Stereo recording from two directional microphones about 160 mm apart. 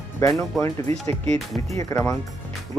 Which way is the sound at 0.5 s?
Centre (ahead or behind).